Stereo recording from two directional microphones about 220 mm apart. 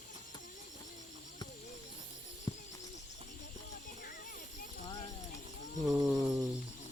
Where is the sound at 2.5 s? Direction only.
20° left (ahead or behind).